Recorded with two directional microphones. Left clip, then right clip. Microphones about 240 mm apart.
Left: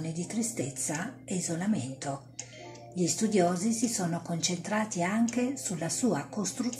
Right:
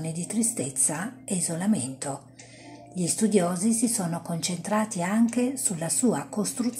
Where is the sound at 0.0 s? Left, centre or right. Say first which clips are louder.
Right 4 dB; right.